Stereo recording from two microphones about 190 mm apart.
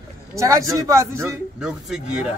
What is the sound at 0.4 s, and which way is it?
Speech, 15° right (ahead or behind).